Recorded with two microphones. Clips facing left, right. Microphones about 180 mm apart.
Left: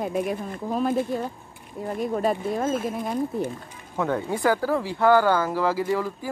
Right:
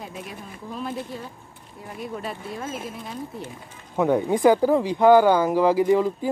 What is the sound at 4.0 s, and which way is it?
Speech, 15° right (ahead or behind).